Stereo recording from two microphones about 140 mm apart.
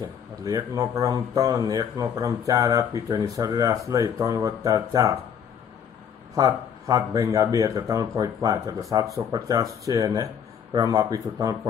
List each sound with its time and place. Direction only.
0.4 s speech: 25° right (ahead or behind)
6.3 s speech: 25° right (ahead or behind)